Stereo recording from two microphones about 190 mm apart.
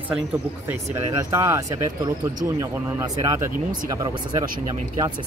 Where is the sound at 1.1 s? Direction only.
15° right (ahead or behind).